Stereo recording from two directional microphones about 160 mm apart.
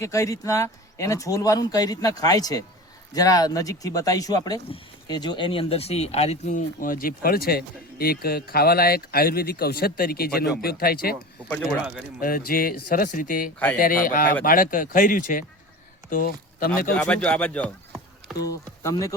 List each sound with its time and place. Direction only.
0.0 s speech: 20° left (ahead or behind); by 11.2 s 70° left (ahead or behind)
12.2 s speech: 65° left (ahead or behind)
16.9 s speech: 5° left (ahead or behind)
18.3 s speech: 20° left (ahead or behind)